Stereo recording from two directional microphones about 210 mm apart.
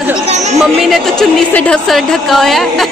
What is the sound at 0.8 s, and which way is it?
A woman's voice, centre (ahead or behind).